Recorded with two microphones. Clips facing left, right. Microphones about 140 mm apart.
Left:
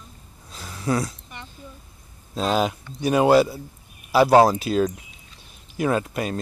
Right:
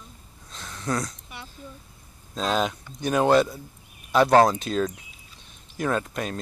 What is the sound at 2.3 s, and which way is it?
Speech, 5° left (ahead or behind).